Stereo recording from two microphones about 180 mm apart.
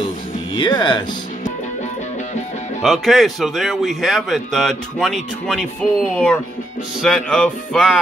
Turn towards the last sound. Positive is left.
turn(degrees=5)  # may be behind; listen again after turning